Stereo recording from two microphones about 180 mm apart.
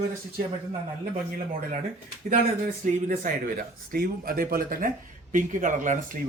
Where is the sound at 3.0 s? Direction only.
50° right (ahead or behind).